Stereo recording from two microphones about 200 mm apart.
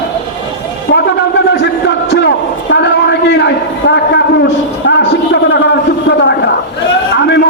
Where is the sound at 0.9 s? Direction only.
60° left (ahead or behind).